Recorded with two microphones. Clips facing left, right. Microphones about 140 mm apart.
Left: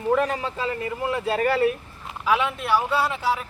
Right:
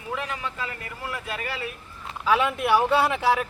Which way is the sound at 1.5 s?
50° left (ahead or behind).